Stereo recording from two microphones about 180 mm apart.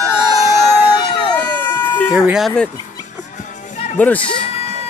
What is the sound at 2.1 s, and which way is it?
Speech, 5° right (ahead or behind).